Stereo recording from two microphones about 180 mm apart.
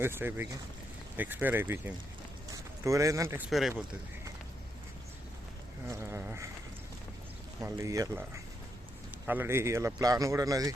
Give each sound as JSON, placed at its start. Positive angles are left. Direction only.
{"t": 0.0, "sound": "speech", "side_deg": -10}
{"t": 3.5, "sound": "speech", "side_deg": -5}
{"t": 5.9, "sound": "a sound", "side_deg": -15}
{"t": 7.6, "sound": "speech", "side_deg": -15}